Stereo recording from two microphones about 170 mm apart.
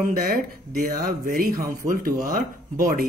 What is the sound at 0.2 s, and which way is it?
Speech, 60° right (ahead or behind).